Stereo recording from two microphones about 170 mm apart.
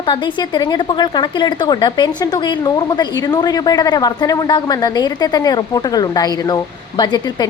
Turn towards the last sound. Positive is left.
turn(degrees=25)  # may be behind; listen again after turning